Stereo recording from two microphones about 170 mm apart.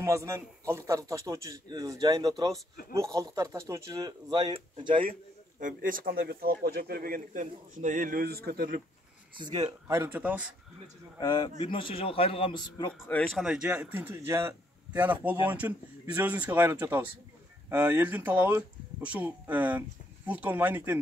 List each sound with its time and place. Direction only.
0.0 s speech: 15° right (ahead or behind)
5.6 s speech: 50° right (ahead or behind)
9.4 s a man's voice: 25° right (ahead or behind); by 10.5 s 10° right (ahead or behind)
11.1 s a man's voice: 25° left (ahead or behind)
13.1 s a man's voice: 5° left (ahead or behind)